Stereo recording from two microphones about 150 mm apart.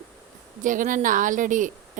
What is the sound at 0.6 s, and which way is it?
A woman's voice, 60° right (ahead or behind).